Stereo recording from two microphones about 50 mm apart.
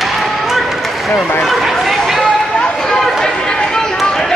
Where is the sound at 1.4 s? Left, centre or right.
Centre.